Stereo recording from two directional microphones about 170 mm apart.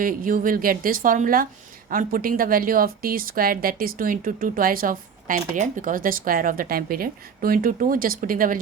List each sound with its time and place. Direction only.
0.0 s a woman's voice: 55° right (ahead or behind)